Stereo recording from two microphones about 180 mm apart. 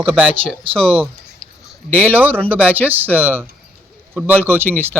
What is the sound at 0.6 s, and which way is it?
Speech, 30° right (ahead or behind).